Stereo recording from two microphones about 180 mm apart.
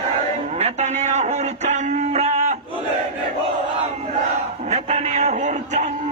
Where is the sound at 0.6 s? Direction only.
35° right (ahead or behind).